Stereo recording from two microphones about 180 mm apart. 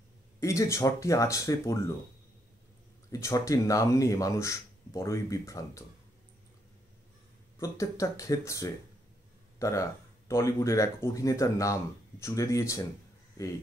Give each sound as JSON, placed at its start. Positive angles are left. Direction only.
{"t": 0.4, "sound": "speech", "side_deg": 15}
{"t": 3.1, "sound": "speech", "side_deg": 15}
{"t": 7.5, "sound": "speech", "side_deg": 15}